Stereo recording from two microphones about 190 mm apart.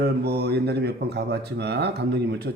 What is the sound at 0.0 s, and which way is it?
Speech, 55° right (ahead or behind).